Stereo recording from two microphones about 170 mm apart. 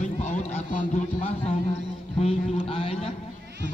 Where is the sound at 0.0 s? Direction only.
40° left (ahead or behind).